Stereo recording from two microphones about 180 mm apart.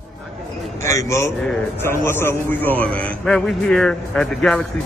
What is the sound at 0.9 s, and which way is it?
A man's voice, 15° left (ahead or behind).